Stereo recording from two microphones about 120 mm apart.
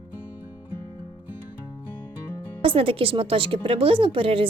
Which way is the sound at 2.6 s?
50° right (ahead or behind).